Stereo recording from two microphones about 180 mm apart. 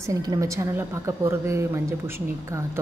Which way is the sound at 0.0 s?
20° right (ahead or behind).